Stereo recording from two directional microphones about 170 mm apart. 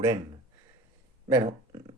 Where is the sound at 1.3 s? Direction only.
25° right (ahead or behind).